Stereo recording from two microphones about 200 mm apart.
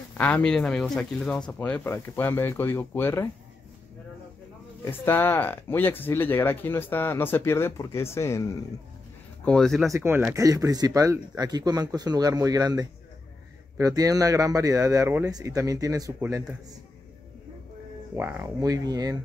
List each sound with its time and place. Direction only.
0.2 s speech: 5° left (ahead or behind)
4.8 s speech: 10° left (ahead or behind)
9.4 s speech: 5° left (ahead or behind)
9.8 s speech: 15° right (ahead or behind)
18.1 s speech: 10° right (ahead or behind)